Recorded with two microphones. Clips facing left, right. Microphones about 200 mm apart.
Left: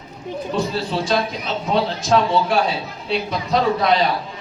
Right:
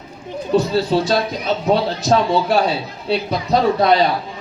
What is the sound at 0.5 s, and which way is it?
Speech, 40° right (ahead or behind).